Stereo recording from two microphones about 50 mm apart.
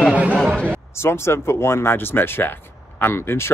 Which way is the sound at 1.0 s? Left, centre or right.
Left.